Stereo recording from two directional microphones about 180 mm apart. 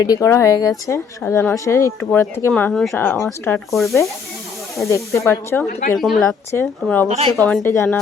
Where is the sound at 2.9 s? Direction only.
15° left (ahead or behind).